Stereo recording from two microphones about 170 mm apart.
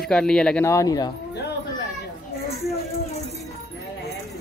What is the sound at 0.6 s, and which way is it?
Speech, 20° left (ahead or behind).